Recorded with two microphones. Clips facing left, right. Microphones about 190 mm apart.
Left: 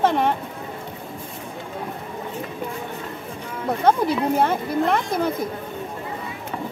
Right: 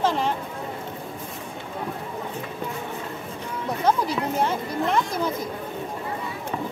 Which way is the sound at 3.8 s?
60° left (ahead or behind).